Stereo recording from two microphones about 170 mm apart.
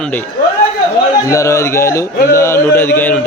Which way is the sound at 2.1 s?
55° left (ahead or behind).